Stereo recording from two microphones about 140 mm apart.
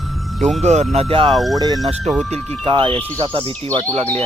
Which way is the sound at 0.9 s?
40° right (ahead or behind).